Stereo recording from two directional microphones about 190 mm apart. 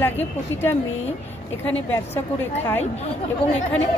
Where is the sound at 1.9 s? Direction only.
10° left (ahead or behind).